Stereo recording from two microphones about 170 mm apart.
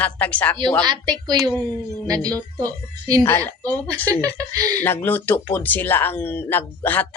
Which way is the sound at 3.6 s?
20° right (ahead or behind).